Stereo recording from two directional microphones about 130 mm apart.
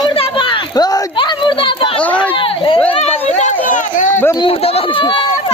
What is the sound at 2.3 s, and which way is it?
Speech, 40° left (ahead or behind).